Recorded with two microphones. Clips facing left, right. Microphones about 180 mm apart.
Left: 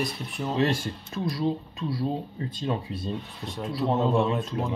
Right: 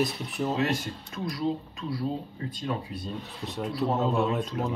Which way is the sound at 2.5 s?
25° left (ahead or behind).